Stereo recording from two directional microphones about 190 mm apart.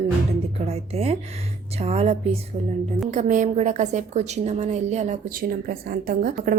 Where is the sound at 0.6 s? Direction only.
35° right (ahead or behind).